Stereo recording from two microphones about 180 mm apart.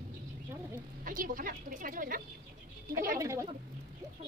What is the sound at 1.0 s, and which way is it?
A woman's voice, 50° right (ahead or behind).